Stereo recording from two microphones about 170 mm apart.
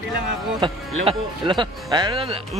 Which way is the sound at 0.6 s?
30° right (ahead or behind).